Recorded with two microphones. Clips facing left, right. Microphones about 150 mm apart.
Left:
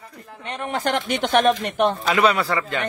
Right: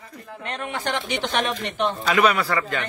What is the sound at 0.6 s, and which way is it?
Speech, 40° left (ahead or behind).